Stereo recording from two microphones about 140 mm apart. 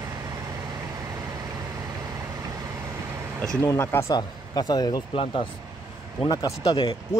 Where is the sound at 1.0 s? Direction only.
25° right (ahead or behind).